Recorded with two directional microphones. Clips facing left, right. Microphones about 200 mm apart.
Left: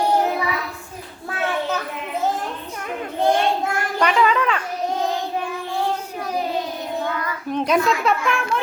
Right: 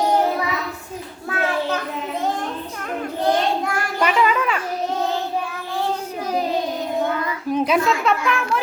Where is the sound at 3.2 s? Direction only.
25° left (ahead or behind).